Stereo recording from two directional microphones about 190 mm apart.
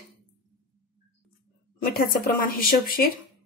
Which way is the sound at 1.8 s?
50° left (ahead or behind).